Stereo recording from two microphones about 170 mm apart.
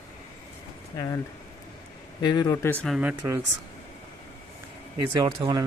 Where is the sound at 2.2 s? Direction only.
25° left (ahead or behind).